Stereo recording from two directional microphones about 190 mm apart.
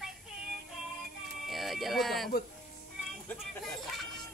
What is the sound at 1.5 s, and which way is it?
Speech, centre (ahead or behind).